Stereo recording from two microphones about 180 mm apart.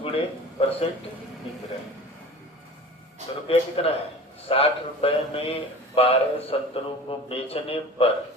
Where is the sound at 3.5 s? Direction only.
30° left (ahead or behind).